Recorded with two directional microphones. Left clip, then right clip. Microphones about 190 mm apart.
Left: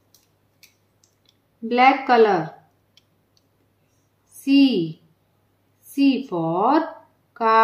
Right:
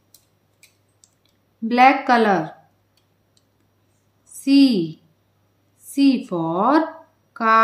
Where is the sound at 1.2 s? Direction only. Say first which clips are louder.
Right 3 dB; 30° right (ahead or behind).